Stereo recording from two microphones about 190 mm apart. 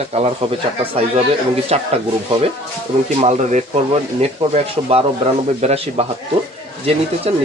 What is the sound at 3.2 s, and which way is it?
Speech, 35° right (ahead or behind).